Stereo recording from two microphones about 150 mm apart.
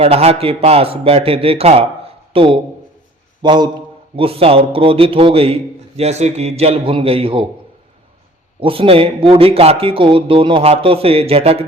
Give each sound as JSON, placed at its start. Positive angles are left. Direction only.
{"t": 0.0, "sound": "speech", "side_deg": -40}
{"t": 8.6, "sound": "speech", "side_deg": -35}